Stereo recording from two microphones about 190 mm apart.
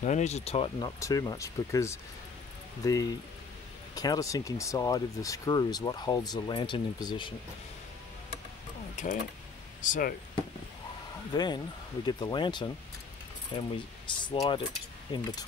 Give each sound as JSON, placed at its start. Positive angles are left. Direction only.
{"t": 0.0, "sound": "speech", "side_deg": 35}
{"t": 0.7, "sound": "speech", "side_deg": 20}
{"t": 8.9, "sound": "speech", "side_deg": 40}
{"t": 11.3, "sound": "speech", "side_deg": 20}